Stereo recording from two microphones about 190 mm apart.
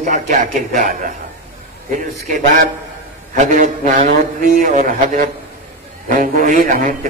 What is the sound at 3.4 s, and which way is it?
A man's voice, 45° right (ahead or behind).